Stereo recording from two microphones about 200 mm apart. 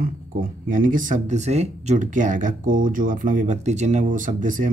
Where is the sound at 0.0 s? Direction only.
40° right (ahead or behind).